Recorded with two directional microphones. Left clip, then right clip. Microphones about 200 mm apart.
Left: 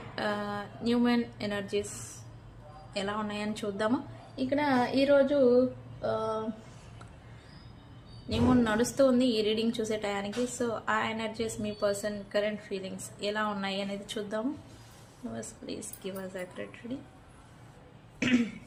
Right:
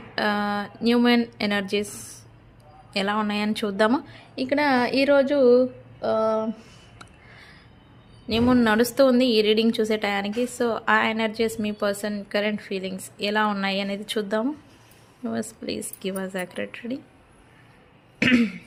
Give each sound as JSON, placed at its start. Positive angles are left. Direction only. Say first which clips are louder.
{"t": 0.2, "sound": "a woman's voice", "louder": "right 9 dB", "side_deg": -45}
{"t": 2.9, "sound": "a woman's voice", "louder": "right 9 dB", "side_deg": -50}
{"t": 8.3, "sound": "a woman's voice", "louder": "right 7 dB", "side_deg": -45}
{"t": 18.2, "sound": "speech", "louder": "right 8 dB", "side_deg": -45}